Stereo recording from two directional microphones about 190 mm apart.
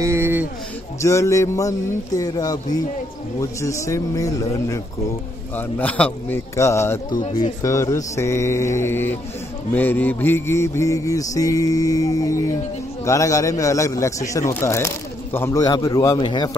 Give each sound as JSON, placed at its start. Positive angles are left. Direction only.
{"t": 0.0, "sound": "a sound", "side_deg": -15}
{"t": 1.0, "sound": "music", "side_deg": 15}
{"t": 5.6, "sound": "music", "side_deg": 10}